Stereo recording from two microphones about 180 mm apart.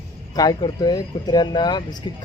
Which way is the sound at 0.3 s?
20° left (ahead or behind).